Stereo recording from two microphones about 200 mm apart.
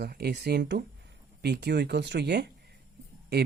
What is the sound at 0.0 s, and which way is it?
Speech, 55° right (ahead or behind).